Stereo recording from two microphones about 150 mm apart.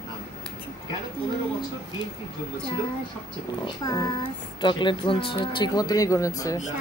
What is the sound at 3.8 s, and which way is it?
Speech, 25° left (ahead or behind).